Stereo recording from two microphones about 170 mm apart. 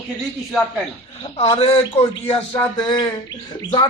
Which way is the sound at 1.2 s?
35° left (ahead or behind).